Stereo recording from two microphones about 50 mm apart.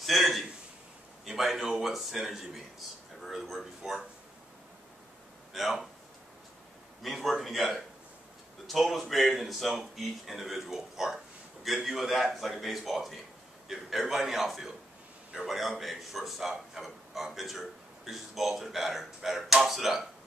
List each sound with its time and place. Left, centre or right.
0.0 s a sound: centre
1.2 s a man's voice: centre
5.5 s speech: centre
7.0 s a man's voice: centre